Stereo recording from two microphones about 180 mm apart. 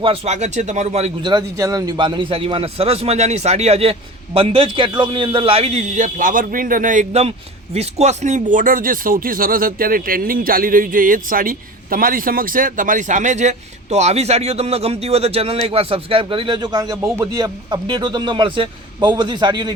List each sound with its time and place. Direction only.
0.0 s a man's voice: 35° right (ahead or behind)
1.3 s a man's voice: 20° right (ahead or behind)